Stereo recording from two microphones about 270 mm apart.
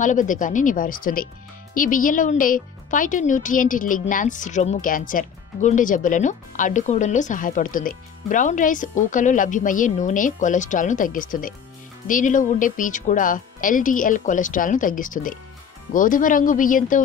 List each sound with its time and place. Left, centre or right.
0.0 s speech: left